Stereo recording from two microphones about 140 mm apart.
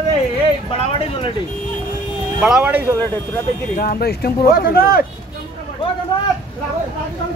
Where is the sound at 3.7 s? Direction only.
90° left.